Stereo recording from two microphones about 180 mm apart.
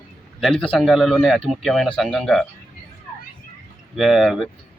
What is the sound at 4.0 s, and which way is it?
Speech, centre (ahead or behind).